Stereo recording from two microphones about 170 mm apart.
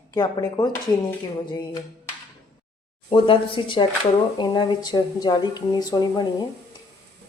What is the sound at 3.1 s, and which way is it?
Speech, 30° left (ahead or behind).